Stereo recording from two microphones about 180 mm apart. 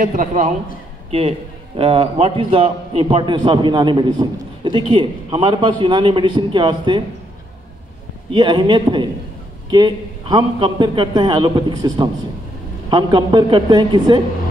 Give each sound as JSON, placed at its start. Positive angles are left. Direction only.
{"t": 0.0, "sound": "a man's voice", "side_deg": -50}
{"t": 1.8, "sound": "a man's voice", "side_deg": -30}
{"t": 8.3, "sound": "a man's voice", "side_deg": -25}